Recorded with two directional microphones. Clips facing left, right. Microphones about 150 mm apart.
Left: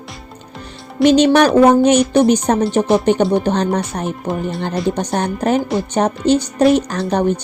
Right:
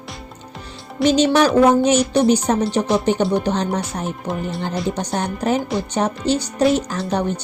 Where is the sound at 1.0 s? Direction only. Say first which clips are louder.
Left 4 dB; 60° left (ahead or behind).